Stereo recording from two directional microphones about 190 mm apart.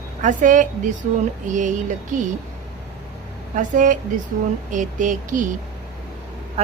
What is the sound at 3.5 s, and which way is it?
Speech, 45° right (ahead or behind).